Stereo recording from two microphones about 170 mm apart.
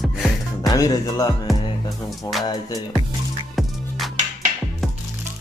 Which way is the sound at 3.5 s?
Centre (ahead or behind).